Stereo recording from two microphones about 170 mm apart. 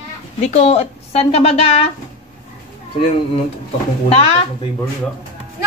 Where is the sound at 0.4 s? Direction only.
40° left (ahead or behind).